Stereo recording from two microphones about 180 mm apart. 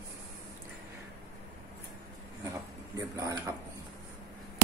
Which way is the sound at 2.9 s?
20° right (ahead or behind).